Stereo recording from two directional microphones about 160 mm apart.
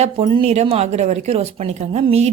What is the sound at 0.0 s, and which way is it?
A woman's voice, 40° right (ahead or behind).